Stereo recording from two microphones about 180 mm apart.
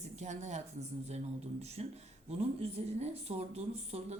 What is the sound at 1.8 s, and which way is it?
Speech, 35° right (ahead or behind).